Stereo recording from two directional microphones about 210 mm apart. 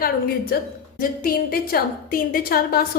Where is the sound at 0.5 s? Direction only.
45° left (ahead or behind).